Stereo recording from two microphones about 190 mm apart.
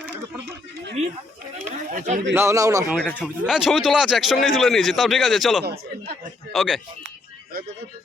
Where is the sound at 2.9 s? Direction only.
5° left (ahead or behind).